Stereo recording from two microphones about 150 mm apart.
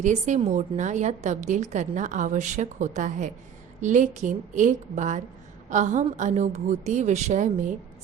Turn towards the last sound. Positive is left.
turn(degrees=-55)  # may be behind; listen again after turning